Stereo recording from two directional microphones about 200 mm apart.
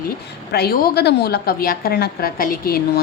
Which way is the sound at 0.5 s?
50° left (ahead or behind).